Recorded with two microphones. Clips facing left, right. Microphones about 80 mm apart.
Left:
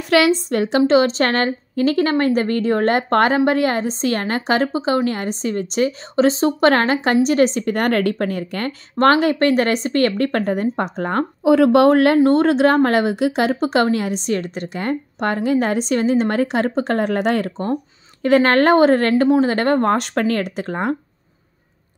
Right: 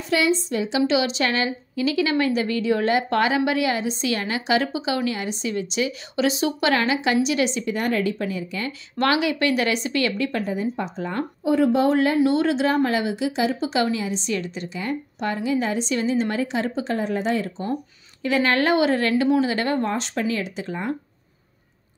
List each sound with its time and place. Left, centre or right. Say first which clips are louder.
0.1 s a woman's voice: left 6 dB; left
8.9 s speech: left 7 dB; left
11.4 s speech: left 7 dB; left
12.2 s speech: left 6 dB; left